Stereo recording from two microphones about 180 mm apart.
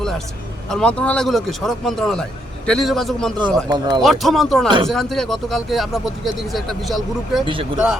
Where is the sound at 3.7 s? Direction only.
25° right (ahead or behind).